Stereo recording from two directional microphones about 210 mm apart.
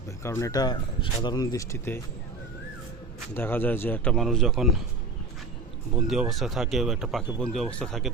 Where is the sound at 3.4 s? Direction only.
10° left (ahead or behind).